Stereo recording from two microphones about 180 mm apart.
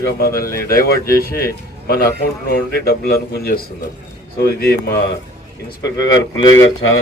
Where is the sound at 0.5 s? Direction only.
55° left (ahead or behind).